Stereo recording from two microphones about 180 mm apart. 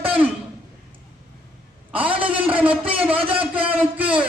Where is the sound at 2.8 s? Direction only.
5° right (ahead or behind).